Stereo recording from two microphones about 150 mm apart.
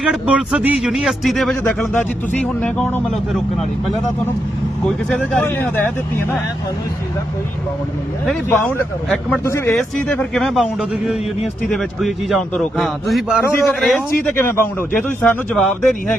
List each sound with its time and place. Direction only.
0.0 s a man's voice: 5° right (ahead or behind); by 3.0 s 10° left (ahead or behind)
4.9 s a man's voice: 5° left (ahead or behind)
9.4 s a man's voice: 20° left (ahead or behind)
9.7 s a man's voice: 5° left (ahead or behind)
13.4 s a man's voice: 15° left (ahead or behind)
13.7 s a man's voice: centre (ahead or behind)
14.3 s a man's voice: 15° left (ahead or behind)